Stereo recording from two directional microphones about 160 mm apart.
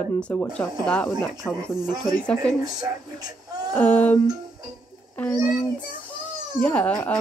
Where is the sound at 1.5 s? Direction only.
25° right (ahead or behind).